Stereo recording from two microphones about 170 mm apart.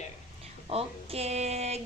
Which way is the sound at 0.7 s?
35° right (ahead or behind).